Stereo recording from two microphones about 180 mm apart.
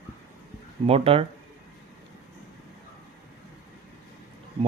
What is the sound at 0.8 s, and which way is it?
Speech, 35° right (ahead or behind).